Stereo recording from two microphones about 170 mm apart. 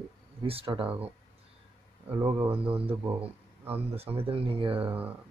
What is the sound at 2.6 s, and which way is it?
Speech, 35° right (ahead or behind).